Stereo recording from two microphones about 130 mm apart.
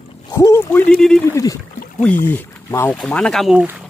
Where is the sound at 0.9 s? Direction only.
5° left (ahead or behind).